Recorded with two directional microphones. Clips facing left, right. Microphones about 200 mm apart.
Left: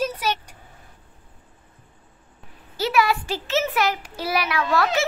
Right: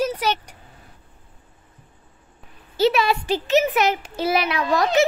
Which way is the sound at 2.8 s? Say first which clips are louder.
Right 3 dB; 25° right (ahead or behind).